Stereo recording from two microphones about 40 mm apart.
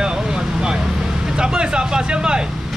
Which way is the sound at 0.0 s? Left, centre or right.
Right.